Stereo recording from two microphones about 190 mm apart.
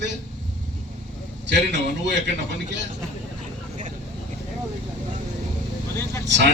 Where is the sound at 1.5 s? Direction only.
65° right (ahead or behind).